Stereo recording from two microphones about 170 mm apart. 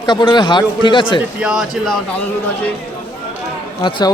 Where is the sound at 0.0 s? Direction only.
25° left (ahead or behind).